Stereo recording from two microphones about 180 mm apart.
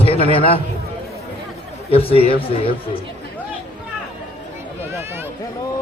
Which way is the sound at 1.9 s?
30° left (ahead or behind).